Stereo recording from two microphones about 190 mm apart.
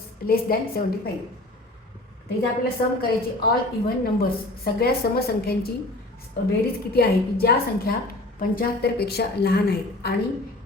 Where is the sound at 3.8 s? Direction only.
55° left (ahead or behind).